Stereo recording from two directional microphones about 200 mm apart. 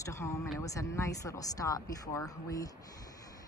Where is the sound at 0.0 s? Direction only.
15° left (ahead or behind).